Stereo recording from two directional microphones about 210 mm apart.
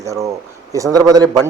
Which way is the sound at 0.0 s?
15° right (ahead or behind).